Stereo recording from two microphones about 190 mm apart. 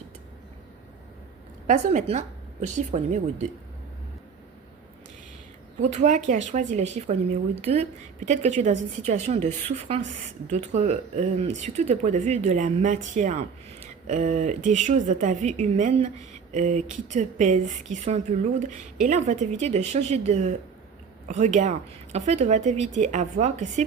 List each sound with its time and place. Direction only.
1.6 s speech: 40° right (ahead or behind)
5.8 s speech: 40° right (ahead or behind)